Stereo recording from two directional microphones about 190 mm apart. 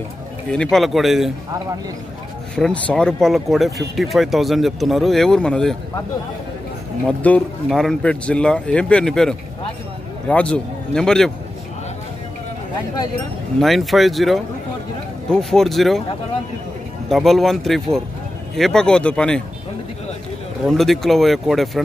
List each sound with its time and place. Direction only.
0.5 s speech: 5° left (ahead or behind)
2.5 s speech: 5° left (ahead or behind)
7.1 s speech: 10° left (ahead or behind)
13.6 s speech: centre (ahead or behind)
17.1 s speech: centre (ahead or behind)
20.6 s speech: centre (ahead or behind)